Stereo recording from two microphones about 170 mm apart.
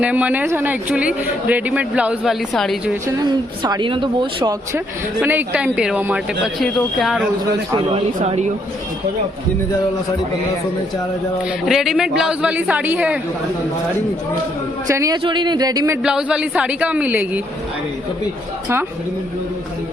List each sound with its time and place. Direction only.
0.0 s a man's voice: 10° right (ahead or behind)
3.6 s speech: 25° right (ahead or behind)
5.2 s a man's voice: 10° right (ahead or behind)
7.7 s speech: 30° right (ahead or behind)
11.6 s speech: centre (ahead or behind)
14.8 s speech: 20° right (ahead or behind)
16.0 s a man's voice: 5° right (ahead or behind)